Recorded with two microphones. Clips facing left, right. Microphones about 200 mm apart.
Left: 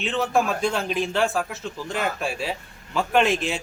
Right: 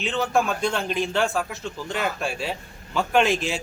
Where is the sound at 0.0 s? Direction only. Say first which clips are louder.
Even; centre (ahead or behind).